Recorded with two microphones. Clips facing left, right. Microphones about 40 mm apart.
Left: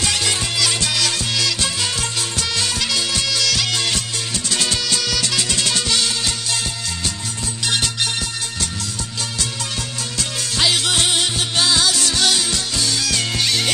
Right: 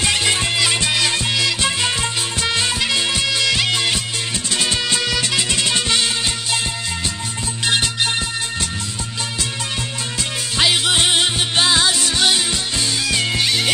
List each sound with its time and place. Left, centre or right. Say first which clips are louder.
0.0 s music: right 3 dB; right
7.6 s music: right 2 dB; right
10.6 s music: right 2 dB; centre